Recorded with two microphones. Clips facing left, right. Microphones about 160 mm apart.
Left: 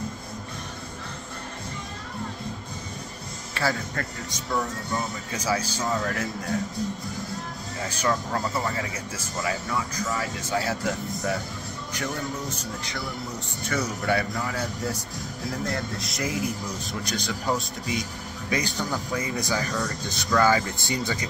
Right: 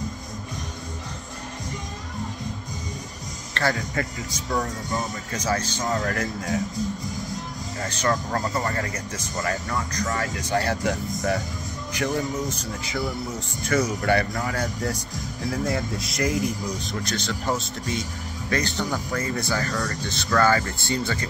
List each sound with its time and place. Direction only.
3.6 s a sound: 10° left (ahead or behind)
3.9 s speech: 5° right (ahead or behind)
5.3 s speech: 10° left (ahead or behind)
7.8 s speech: 10° left (ahead or behind)
18.5 s speech: 10° left (ahead or behind)